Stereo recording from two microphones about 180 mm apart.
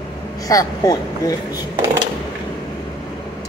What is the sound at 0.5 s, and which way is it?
Speech, 20° left (ahead or behind).